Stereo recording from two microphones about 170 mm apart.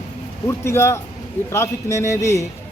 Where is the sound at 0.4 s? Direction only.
15° left (ahead or behind).